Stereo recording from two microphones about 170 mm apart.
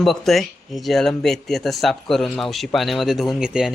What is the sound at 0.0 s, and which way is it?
Speech, centre (ahead or behind).